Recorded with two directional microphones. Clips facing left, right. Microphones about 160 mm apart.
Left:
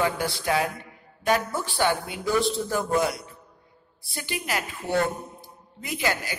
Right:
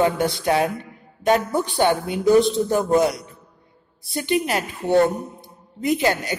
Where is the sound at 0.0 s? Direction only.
25° right (ahead or behind).